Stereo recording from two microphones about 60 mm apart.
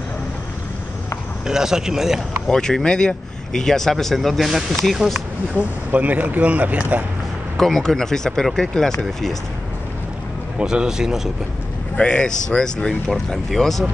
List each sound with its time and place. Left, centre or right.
1.5 s speech: centre
2.5 s speech: centre
5.6 s speech: right
7.5 s speech: centre
10.6 s speech: centre
12.0 s speech: centre